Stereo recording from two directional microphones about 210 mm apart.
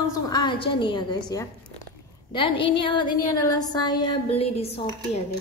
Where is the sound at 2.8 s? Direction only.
20° left (ahead or behind).